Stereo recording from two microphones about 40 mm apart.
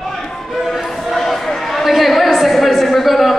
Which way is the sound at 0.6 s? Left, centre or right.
Centre.